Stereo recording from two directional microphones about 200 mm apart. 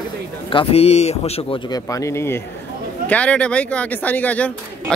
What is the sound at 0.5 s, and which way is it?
Speech, 25° left (ahead or behind).